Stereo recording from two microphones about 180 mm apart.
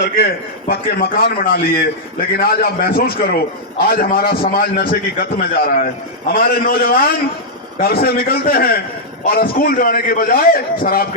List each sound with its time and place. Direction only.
0.7 s a man's voice: 55° left (ahead or behind)